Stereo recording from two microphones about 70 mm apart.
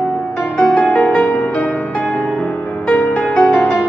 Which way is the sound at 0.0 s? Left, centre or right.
Centre.